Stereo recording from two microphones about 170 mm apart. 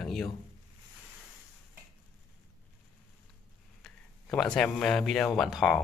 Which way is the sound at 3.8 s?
5° left (ahead or behind).